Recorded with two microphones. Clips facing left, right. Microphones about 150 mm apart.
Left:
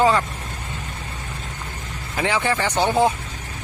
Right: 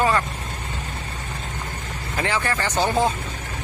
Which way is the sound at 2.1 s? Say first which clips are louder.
Left 3 dB; 15° left (ahead or behind).